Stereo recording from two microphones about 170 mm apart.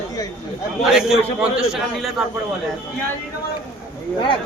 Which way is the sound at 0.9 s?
5° right (ahead or behind).